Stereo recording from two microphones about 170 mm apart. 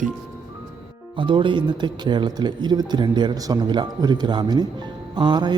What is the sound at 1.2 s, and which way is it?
Speech, 30° right (ahead or behind).